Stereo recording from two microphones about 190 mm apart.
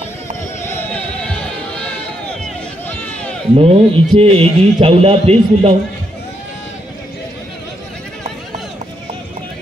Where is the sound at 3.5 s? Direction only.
30° right (ahead or behind).